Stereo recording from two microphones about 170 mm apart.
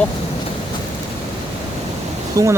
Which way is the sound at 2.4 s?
20° right (ahead or behind).